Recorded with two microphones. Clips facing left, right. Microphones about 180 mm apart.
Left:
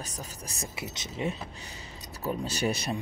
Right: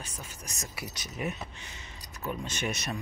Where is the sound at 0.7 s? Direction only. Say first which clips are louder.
Left 2 dB; 25° left (ahead or behind).